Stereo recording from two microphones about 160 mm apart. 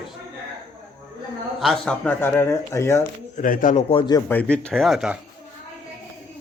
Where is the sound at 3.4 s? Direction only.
55° left (ahead or behind).